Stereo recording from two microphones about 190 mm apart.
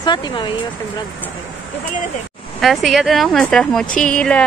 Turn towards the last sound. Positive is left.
turn(degrees=5)  # may be behind; listen again after turning